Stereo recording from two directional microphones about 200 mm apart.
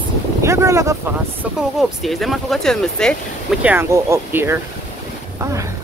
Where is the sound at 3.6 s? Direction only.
10° right (ahead or behind).